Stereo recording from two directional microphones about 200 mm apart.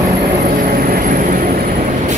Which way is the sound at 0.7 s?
45° right (ahead or behind).